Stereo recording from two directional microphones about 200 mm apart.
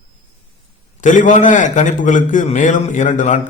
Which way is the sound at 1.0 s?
40° left (ahead or behind).